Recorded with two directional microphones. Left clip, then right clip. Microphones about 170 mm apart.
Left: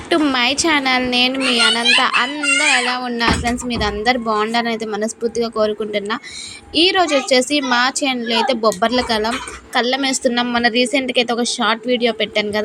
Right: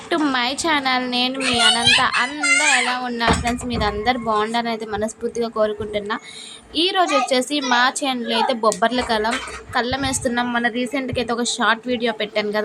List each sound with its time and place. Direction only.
0.3 s a child's voice: 15° left (ahead or behind)